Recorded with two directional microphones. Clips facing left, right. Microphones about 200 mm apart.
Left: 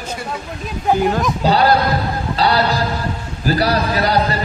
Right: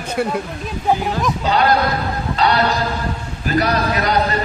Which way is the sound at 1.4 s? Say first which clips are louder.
Left 2 dB; 35° left (ahead or behind).